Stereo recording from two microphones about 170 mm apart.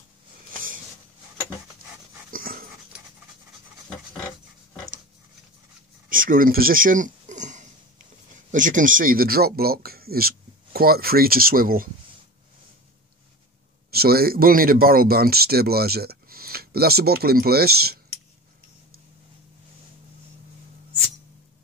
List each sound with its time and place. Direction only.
2.3 s dog: 60° right (ahead or behind)
6.0 s a sound: 55° right (ahead or behind)
8.5 s speech: 50° right (ahead or behind)
13.9 s speech: 65° right (ahead or behind)